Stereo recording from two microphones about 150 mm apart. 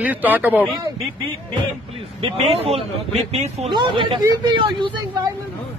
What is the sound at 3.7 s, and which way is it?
Speech, 30° right (ahead or behind).